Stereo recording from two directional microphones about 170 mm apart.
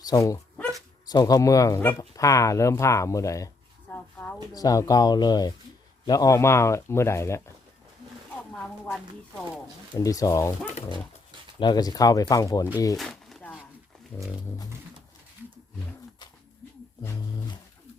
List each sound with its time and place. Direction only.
0.0 s speech: 20° left (ahead or behind)
4.5 s speech: 20° left (ahead or behind)
8.5 s speech: 5° left (ahead or behind)
9.9 s speech: 20° left (ahead or behind)
11.6 s speech: 25° left (ahead or behind)
13.0 s a sound: centre (ahead or behind)